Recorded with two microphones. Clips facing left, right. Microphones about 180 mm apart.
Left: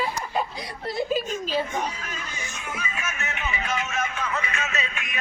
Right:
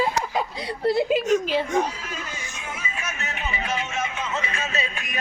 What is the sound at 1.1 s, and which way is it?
Speech, 70° right (ahead or behind).